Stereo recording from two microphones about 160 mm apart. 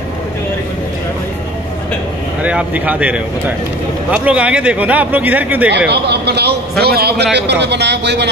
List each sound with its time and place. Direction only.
2.4 s speech: 10° right (ahead or behind)
5.9 s a man's voice: 90° right